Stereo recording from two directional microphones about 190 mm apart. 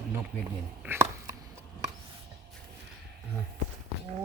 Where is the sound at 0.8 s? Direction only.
10° right (ahead or behind).